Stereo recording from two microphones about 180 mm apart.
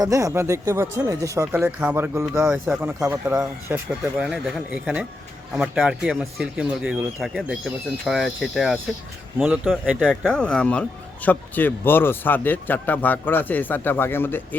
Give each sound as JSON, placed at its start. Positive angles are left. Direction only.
{"t": 0.0, "sound": "speech", "side_deg": -20}